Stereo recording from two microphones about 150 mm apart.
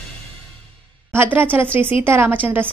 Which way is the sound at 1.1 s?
15° right (ahead or behind).